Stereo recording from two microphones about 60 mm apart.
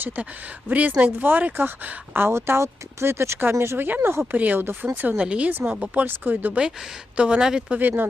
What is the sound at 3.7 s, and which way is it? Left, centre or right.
Speech, right.